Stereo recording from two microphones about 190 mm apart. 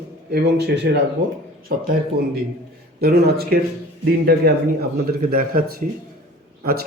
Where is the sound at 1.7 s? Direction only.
50° right (ahead or behind).